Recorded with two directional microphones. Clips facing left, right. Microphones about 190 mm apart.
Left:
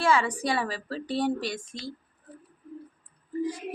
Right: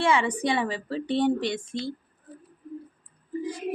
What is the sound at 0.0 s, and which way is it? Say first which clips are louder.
A woman's voice: right 1 dB; 20° right (ahead or behind).